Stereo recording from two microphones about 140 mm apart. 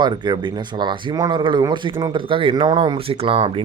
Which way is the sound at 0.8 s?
30° right (ahead or behind).